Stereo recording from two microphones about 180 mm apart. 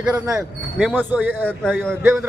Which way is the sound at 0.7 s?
5° left (ahead or behind).